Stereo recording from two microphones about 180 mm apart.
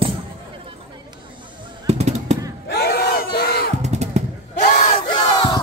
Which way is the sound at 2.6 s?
60° left (ahead or behind).